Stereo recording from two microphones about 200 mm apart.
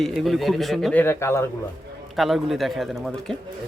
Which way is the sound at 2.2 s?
Centre (ahead or behind).